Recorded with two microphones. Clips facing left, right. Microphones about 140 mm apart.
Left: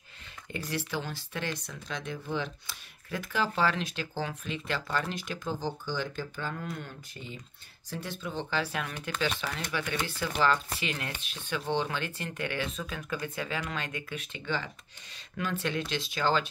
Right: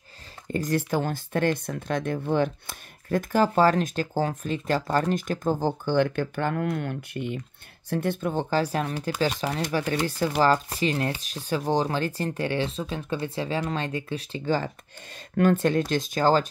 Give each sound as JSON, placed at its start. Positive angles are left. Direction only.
{"t": 0.5, "sound": "speech", "side_deg": -45}